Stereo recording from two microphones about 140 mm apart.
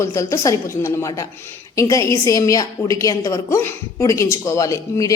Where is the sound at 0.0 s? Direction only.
20° left (ahead or behind).